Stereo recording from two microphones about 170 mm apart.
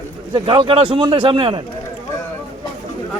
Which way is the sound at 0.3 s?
30° right (ahead or behind).